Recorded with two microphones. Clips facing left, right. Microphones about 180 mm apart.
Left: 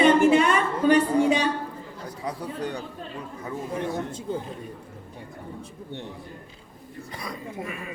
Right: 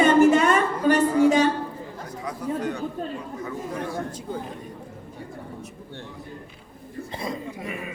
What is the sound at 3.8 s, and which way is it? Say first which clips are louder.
Chatter: left 2 dB; 20° left (ahead or behind).